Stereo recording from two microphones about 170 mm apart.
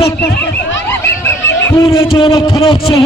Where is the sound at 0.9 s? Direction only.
15° left (ahead or behind).